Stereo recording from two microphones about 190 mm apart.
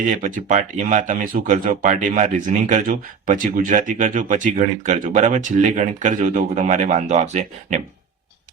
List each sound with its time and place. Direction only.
0.1 s speech: 40° right (ahead or behind)